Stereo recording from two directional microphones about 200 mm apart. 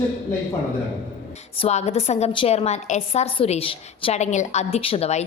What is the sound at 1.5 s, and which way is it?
A woman's voice, 30° left (ahead or behind).